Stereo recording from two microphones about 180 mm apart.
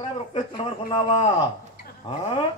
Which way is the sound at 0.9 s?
35° left (ahead or behind).